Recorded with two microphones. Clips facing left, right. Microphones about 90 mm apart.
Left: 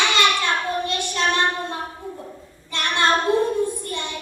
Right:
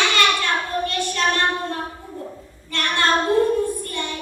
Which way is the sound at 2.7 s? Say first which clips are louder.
Even; 20° left (ahead or behind).